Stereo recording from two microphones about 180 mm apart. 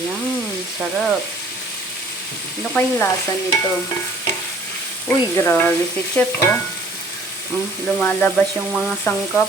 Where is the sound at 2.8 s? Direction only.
10° left (ahead or behind).